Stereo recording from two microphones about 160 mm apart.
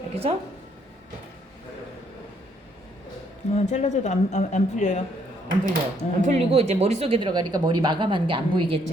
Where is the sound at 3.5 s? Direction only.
45° left (ahead or behind).